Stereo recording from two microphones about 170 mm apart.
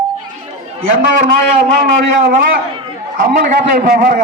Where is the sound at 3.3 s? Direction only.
65° right (ahead or behind).